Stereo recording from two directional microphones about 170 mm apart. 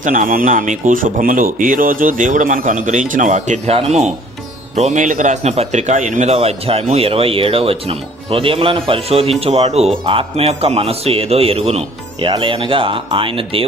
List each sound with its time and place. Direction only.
0.0 s a man's voice: 50° right (ahead or behind); by 13.7 s 30° right (ahead or behind)